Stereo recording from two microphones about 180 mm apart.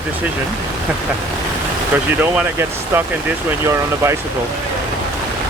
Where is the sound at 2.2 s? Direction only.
10° right (ahead or behind).